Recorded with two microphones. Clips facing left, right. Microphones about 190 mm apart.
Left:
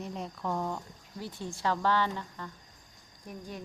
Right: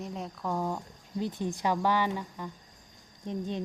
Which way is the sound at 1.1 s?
20° right (ahead or behind).